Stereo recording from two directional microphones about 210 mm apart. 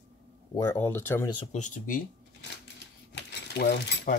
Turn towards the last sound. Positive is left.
turn(degrees=40)  # may be behind; listen again after turning